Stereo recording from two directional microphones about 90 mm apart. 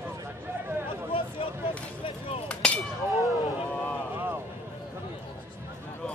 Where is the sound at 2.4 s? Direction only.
15° left (ahead or behind).